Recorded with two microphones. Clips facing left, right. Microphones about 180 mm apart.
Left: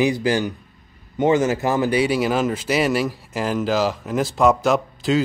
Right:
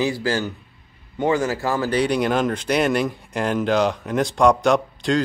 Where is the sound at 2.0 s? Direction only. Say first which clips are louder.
Even; 5° left (ahead or behind).